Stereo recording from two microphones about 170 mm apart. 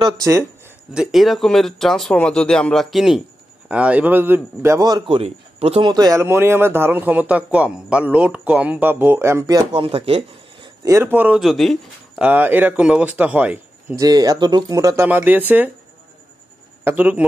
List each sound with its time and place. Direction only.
0.0 s speech: 20° right (ahead or behind)
0.9 s a man's voice: centre (ahead or behind); by 10.7 s 35° right (ahead or behind)
10.8 s speech: 15° right (ahead or behind); by 12.3 s centre (ahead or behind)
12.3 s a man's voice: 10° right (ahead or behind)
13.9 s speech: 20° right (ahead or behind)
16.8 s a man's voice: 10° right (ahead or behind)